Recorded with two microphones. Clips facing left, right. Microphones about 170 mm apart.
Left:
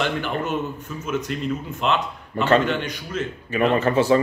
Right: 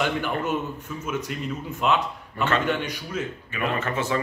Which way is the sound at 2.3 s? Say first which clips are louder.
Left 7 dB; 35° left (ahead or behind).